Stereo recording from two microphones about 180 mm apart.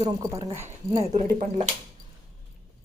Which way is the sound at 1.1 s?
40° right (ahead or behind).